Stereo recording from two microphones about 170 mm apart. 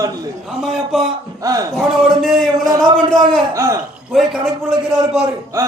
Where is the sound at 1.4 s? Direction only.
20° right (ahead or behind).